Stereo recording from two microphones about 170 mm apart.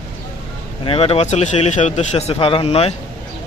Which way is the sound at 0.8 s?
35° left (ahead or behind).